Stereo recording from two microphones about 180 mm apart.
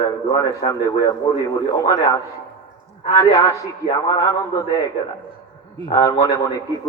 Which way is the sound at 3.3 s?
20° left (ahead or behind).